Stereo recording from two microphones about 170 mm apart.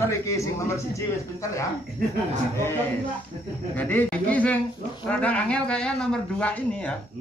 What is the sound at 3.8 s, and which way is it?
Speech, 10° left (ahead or behind).